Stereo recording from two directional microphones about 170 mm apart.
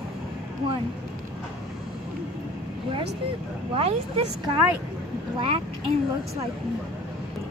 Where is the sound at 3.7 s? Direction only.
35° right (ahead or behind).